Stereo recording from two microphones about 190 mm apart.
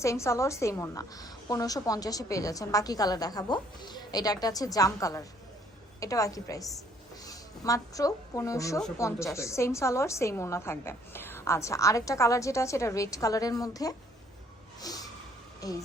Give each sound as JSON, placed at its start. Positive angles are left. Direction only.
{"t": 0.0, "sound": "a woman's voice", "side_deg": 15}
{"t": 14.8, "sound": "snort", "side_deg": 20}
{"t": 15.6, "sound": "a woman's voice", "side_deg": 20}